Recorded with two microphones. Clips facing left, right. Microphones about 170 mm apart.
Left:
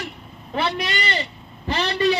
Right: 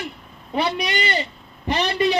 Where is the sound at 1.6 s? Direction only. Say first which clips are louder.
Right 1 dB; 15° right (ahead or behind).